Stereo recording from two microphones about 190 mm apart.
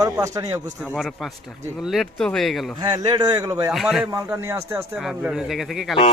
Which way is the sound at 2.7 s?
25° right (ahead or behind).